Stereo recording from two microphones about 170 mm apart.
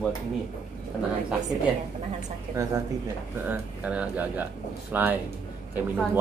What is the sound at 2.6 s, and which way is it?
Speech, 20° right (ahead or behind).